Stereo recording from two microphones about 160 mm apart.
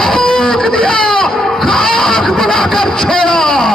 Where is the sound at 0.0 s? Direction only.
5° left (ahead or behind).